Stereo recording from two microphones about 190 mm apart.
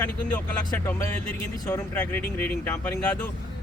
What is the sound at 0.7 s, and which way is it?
Speech, 10° left (ahead or behind).